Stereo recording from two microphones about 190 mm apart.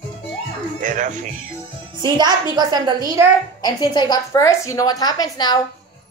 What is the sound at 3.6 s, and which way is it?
A woman's voice, 20° left (ahead or behind).